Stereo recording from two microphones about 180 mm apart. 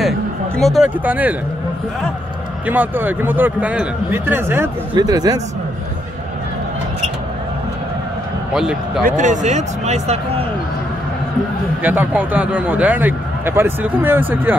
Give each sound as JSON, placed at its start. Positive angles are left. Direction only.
{"t": 0.6, "sound": "a man's voice", "side_deg": 0}
{"t": 2.6, "sound": "a man's voice", "side_deg": -10}
{"t": 8.5, "sound": "a man's voice", "side_deg": -5}
{"t": 9.0, "sound": "a man's voice", "side_deg": -45}
{"t": 11.8, "sound": "a man's voice", "side_deg": -10}